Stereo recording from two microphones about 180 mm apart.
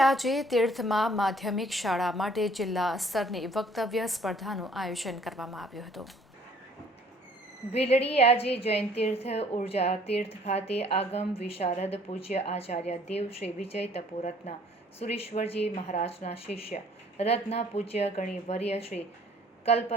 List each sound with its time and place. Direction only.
0.0 s a woman's voice: centre (ahead or behind)
7.7 s a woman's voice: 35° left (ahead or behind)